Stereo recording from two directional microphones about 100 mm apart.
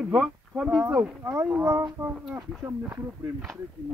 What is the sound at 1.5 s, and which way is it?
Speech, 10° right (ahead or behind).